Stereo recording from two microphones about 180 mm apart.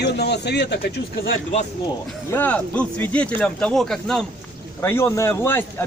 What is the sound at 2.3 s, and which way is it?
Speech, 10° left (ahead or behind).